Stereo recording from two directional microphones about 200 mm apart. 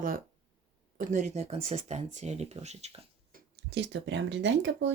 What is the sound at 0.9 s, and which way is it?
Speech, 35° right (ahead or behind).